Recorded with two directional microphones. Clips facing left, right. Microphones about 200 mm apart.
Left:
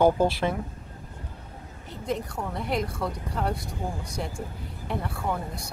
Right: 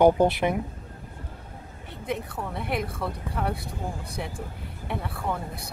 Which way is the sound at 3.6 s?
55° right (ahead or behind).